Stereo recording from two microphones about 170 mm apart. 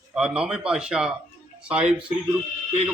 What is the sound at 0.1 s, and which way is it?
Speech, 5° right (ahead or behind).